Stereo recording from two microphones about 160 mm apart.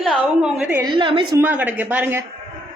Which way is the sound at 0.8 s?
30° right (ahead or behind).